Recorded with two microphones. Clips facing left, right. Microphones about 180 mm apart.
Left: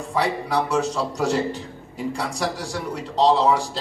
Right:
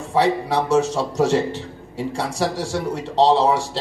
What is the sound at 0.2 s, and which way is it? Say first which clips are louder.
A man's voice: right 4 dB; 30° right (ahead or behind).